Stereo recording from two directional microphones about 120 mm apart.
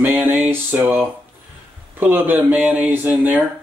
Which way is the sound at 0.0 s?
15° right (ahead or behind).